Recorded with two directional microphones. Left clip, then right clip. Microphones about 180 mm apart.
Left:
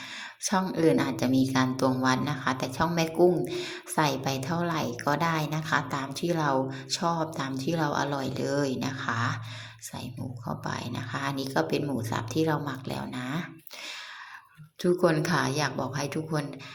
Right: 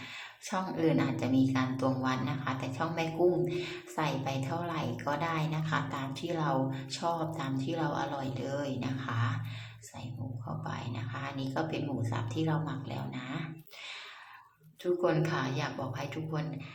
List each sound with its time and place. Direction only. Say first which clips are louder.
0.4 s a woman's voice: left 6 dB; 20° left (ahead or behind)
10.4 s a woman's voice: left 6 dB; 25° left (ahead or behind)
14.8 s a woman's voice: left 5 dB; 25° left (ahead or behind)